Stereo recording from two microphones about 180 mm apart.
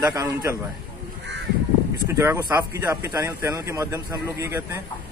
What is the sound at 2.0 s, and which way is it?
Speech, 15° right (ahead or behind).